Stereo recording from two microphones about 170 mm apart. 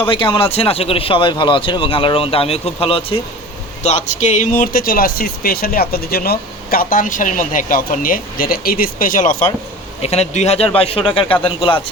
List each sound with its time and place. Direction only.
0.1 s a man's voice: 30° left (ahead or behind)
3.8 s speech: 45° left (ahead or behind)
10.0 s a man's voice: 35° left (ahead or behind)